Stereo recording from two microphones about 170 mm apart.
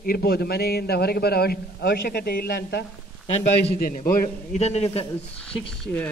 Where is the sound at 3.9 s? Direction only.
55° left (ahead or behind).